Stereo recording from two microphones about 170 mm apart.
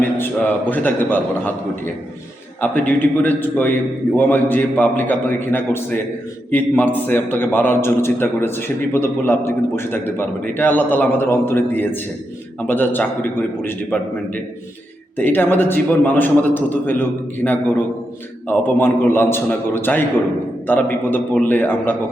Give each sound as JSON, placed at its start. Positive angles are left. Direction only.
{"t": 0.7, "sound": "a man's voice", "side_deg": 10}